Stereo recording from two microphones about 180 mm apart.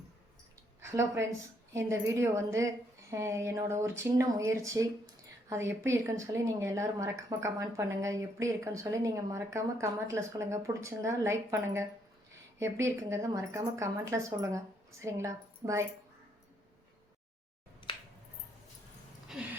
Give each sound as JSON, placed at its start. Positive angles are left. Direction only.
{"t": 0.8, "sound": "a woman's voice", "side_deg": -15}
{"t": 17.8, "sound": "finger snapping", "side_deg": 30}
{"t": 19.3, "sound": "a sound", "side_deg": 0}